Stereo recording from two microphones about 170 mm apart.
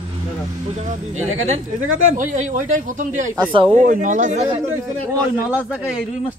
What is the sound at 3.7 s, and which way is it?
Speech, 50° right (ahead or behind).